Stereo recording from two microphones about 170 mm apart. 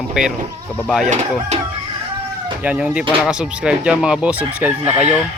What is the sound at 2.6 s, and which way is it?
Speech, 5° right (ahead or behind).